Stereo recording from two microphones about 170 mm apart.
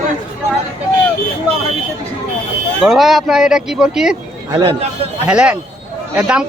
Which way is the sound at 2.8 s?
Centre (ahead or behind).